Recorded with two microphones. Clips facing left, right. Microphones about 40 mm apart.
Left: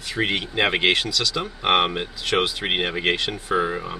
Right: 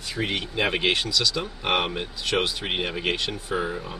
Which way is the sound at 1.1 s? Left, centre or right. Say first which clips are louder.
Left 1 dB; left.